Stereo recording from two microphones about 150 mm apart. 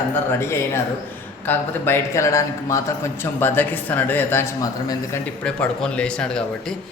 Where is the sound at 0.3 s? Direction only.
15° left (ahead or behind).